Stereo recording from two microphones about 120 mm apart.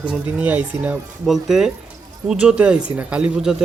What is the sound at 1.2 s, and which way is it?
A man's voice, centre (ahead or behind).